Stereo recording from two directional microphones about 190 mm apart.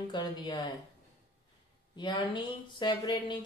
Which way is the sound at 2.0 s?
25° left (ahead or behind).